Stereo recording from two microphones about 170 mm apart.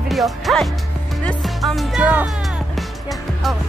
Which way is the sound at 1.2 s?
Centre (ahead or behind).